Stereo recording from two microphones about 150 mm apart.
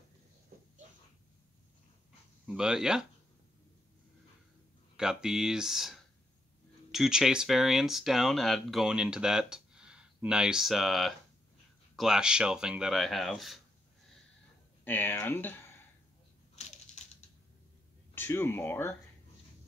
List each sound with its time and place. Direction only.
0.5 s a sound: 85° right
2.4 s speech: 5° right (ahead or behind)
4.9 s speech: 5° right (ahead or behind)
14.9 s speech: 15° left (ahead or behind)
18.1 s speech: 15° left (ahead or behind)